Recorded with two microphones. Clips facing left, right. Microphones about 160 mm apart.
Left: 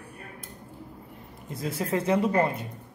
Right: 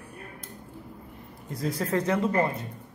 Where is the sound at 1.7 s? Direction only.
25° left (ahead or behind).